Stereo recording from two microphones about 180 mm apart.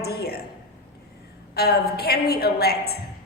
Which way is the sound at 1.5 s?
60° left (ahead or behind).